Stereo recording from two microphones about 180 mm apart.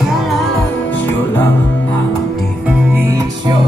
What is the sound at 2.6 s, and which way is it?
Music, 5° right (ahead or behind).